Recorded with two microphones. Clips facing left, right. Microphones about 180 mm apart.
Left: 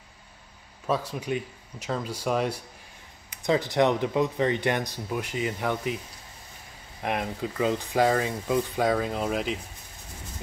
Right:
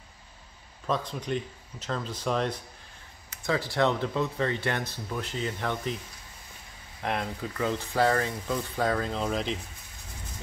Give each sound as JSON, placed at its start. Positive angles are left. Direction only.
{"t": 0.8, "sound": "speech", "side_deg": 10}
{"t": 7.0, "sound": "speech", "side_deg": 15}